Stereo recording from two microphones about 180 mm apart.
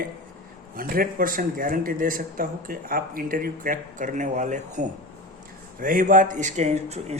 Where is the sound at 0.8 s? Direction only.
55° right (ahead or behind).